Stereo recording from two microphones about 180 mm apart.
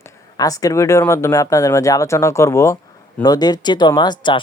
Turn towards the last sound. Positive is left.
turn(degrees=25)  # may be behind; listen again after turning